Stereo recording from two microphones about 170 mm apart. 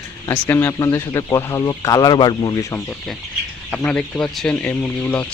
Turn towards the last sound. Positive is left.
turn(degrees=15)  # may be behind; listen again after turning